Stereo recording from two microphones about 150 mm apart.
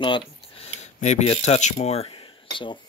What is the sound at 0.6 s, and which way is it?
Speech, 50° left (ahead or behind).